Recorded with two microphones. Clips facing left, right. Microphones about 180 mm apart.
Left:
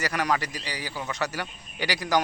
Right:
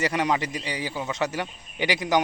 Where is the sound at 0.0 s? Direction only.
25° right (ahead or behind).